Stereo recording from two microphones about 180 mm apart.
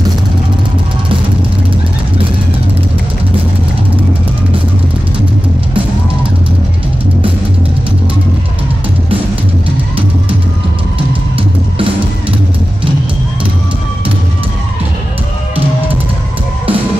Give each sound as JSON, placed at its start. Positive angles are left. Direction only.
{"t": 11.3, "sound": "music", "side_deg": -30}